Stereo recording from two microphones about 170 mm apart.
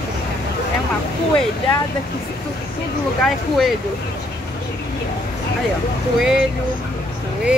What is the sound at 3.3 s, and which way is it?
Speech, centre (ahead or behind).